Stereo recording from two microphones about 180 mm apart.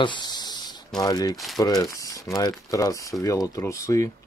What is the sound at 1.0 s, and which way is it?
Speech, 20° left (ahead or behind).